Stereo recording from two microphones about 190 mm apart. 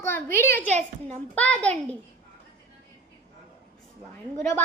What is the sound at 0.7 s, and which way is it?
Speech, 35° right (ahead or behind).